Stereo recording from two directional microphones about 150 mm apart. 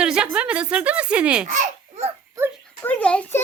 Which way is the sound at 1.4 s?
55° right (ahead or behind).